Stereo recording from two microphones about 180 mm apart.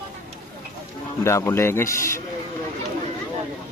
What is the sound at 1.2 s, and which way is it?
A man's voice, 15° left (ahead or behind).